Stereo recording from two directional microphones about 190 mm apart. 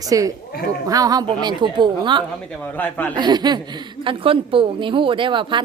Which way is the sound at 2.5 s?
10° left (ahead or behind).